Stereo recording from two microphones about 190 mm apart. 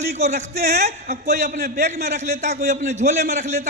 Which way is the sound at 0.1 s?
35° right (ahead or behind).